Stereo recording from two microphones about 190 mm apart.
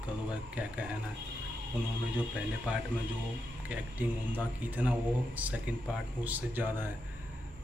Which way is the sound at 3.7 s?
10° right (ahead or behind).